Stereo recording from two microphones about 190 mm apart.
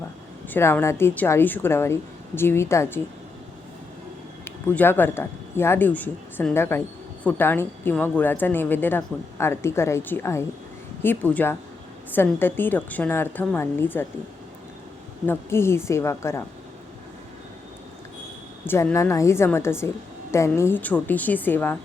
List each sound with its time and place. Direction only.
0.5 s a woman's voice: 10° left (ahead or behind)
4.4 s a woman's voice: 10° left (ahead or behind)
15.3 s a woman's voice: 15° left (ahead or behind)
18.6 s a woman's voice: 10° left (ahead or behind)